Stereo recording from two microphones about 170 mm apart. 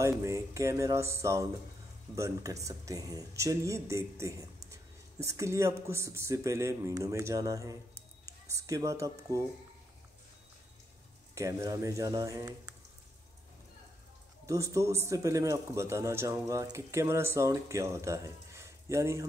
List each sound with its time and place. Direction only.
0.0 s speech: 15° right (ahead or behind)
11.3 s speech: 20° right (ahead or behind)
14.4 s speech: 20° right (ahead or behind)